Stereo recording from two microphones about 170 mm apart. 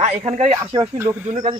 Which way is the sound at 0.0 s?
40° right (ahead or behind).